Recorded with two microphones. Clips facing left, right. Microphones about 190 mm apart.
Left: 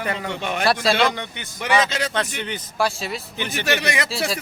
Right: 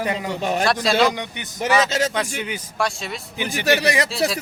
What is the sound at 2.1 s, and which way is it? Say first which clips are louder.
A man's voice: right 1 dB; 10° right (ahead or behind).